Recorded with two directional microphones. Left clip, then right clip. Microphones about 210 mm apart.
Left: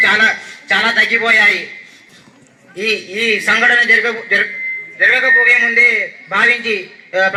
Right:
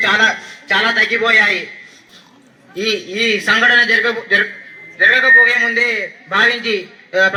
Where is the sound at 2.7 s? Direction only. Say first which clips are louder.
Left 1 dB; 45° right (ahead or behind).